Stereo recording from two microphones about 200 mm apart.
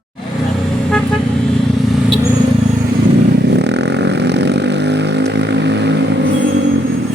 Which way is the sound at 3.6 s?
60° right (ahead or behind).